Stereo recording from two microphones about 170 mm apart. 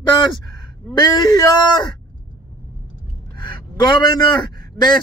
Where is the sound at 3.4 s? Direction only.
25° left (ahead or behind).